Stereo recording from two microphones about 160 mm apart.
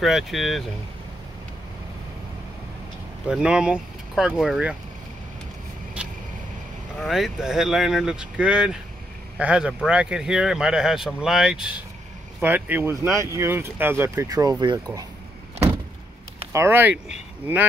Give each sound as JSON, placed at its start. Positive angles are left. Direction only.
{"t": 0.0, "sound": "speech", "side_deg": 0}
{"t": 3.3, "sound": "speech", "side_deg": -5}
{"t": 7.1, "sound": "speech", "side_deg": 0}
{"t": 16.5, "sound": "speech", "side_deg": -15}